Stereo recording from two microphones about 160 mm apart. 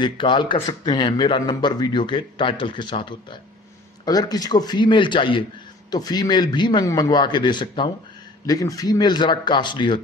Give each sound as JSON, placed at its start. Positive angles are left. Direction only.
{"t": 0.0, "sound": "a man's voice", "side_deg": 30}